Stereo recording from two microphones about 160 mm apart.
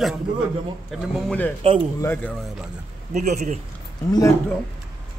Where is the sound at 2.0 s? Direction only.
10° left (ahead or behind).